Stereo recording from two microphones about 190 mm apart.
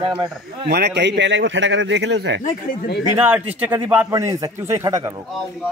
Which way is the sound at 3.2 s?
10° right (ahead or behind).